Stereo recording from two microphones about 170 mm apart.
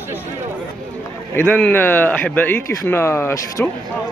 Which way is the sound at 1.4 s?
10° left (ahead or behind).